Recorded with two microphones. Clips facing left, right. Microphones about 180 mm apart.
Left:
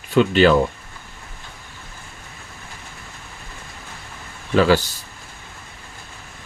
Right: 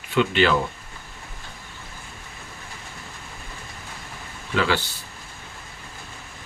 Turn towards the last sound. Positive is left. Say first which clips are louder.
# left 7 dB
turn(degrees=40)  # may be behind; listen again after turning